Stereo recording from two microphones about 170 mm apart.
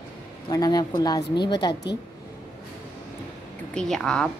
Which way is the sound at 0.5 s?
20° left (ahead or behind).